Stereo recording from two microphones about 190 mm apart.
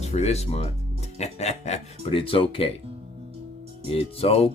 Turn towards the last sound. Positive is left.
turn(degrees=30)  # may be behind; listen again after turning